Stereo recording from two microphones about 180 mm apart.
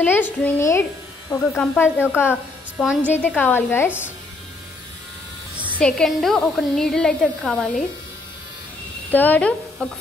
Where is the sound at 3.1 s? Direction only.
10° left (ahead or behind).